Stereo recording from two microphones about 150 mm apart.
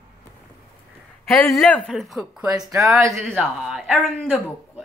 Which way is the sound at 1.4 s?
Centre (ahead or behind).